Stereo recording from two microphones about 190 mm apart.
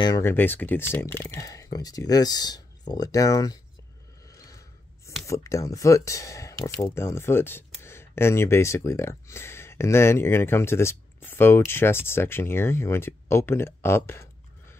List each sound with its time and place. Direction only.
0.0 s speech: 15° left (ahead or behind)
4.3 s a sound: 15° left (ahead or behind)
5.2 s speech: 15° left (ahead or behind)